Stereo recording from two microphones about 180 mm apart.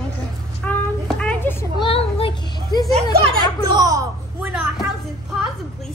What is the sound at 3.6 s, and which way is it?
Speech, 20° right (ahead or behind).